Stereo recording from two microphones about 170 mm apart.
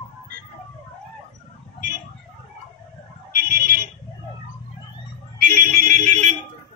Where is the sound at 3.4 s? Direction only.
65° right (ahead or behind).